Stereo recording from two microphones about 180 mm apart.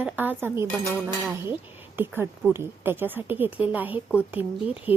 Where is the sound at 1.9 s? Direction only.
10° right (ahead or behind).